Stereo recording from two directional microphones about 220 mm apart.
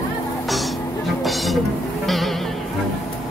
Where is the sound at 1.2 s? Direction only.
Centre (ahead or behind).